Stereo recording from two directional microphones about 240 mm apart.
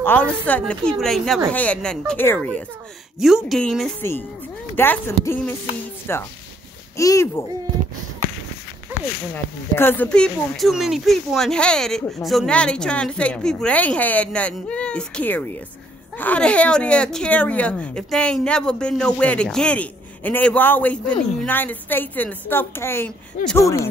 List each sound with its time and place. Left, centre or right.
0.0 s speech: centre
9.3 s speech: centre